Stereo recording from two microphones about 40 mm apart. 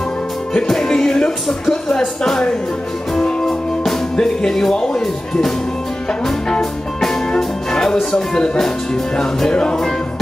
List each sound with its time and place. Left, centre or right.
0.7 s music: centre
3.2 s music: centre
4.2 s speech: centre
7.0 s speech: centre